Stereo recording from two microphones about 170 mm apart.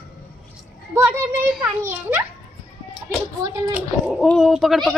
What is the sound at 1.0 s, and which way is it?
A child's voice, 5° right (ahead or behind).